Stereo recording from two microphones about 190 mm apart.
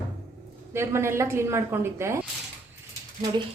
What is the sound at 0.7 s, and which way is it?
A woman's voice, 15° right (ahead or behind).